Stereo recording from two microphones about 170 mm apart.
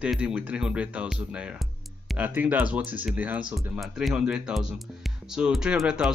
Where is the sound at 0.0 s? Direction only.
5° right (ahead or behind).